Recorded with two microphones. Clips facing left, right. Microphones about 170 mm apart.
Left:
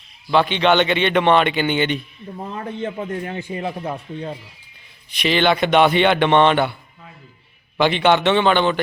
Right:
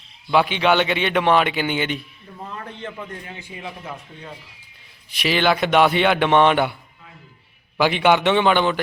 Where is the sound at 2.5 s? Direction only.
25° left (ahead or behind).